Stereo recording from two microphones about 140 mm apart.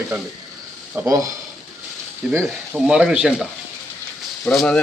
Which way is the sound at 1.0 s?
25° right (ahead or behind).